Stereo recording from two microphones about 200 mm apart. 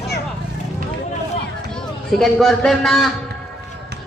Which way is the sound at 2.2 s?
Centre (ahead or behind).